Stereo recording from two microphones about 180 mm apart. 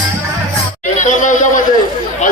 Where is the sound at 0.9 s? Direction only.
45° left (ahead or behind).